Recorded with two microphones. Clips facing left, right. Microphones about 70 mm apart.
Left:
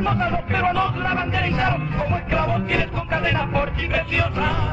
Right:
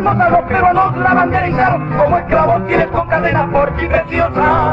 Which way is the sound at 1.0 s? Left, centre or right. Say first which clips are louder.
Right 11 dB; right.